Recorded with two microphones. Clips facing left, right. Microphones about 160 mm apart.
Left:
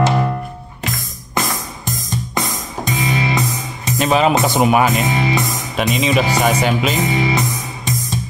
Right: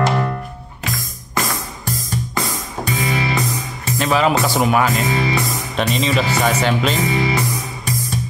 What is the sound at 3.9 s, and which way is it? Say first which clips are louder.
Speech: left 2 dB; 20° left (ahead or behind).